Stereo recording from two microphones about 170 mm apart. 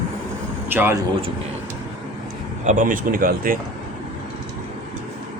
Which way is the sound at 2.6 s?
50° right (ahead or behind).